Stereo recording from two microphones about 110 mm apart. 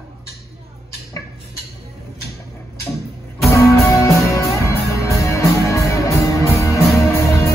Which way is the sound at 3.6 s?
30° left (ahead or behind).